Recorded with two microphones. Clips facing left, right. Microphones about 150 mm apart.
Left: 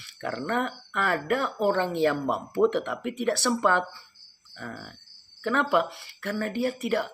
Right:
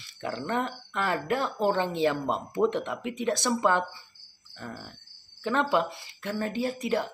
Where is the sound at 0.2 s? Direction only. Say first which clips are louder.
Left 2 dB; 20° right (ahead or behind).